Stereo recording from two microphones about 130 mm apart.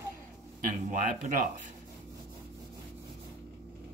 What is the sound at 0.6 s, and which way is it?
Speech, 80° right.